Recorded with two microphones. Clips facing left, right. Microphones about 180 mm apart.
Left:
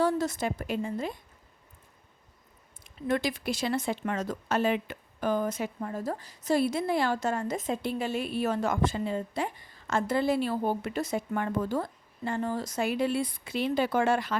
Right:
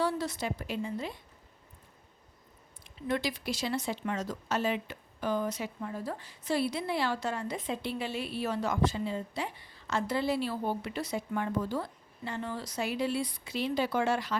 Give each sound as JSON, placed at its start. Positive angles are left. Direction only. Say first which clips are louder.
{"t": 0.0, "sound": "speech", "louder": "left 4 dB", "side_deg": 45}
{"t": 2.8, "sound": "speech", "louder": "left 3 dB", "side_deg": 50}